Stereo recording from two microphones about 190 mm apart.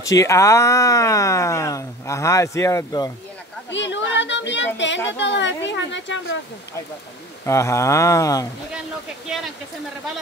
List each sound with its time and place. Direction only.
0.0 s speech: 15° left (ahead or behind)
3.7 s speech: 70° left (ahead or behind)
7.4 s speech: 15° left (ahead or behind)